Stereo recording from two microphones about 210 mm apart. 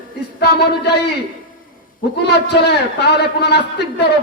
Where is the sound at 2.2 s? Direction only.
50° left (ahead or behind).